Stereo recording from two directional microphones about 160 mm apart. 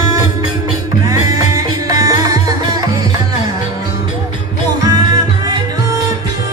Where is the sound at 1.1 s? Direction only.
20° right (ahead or behind).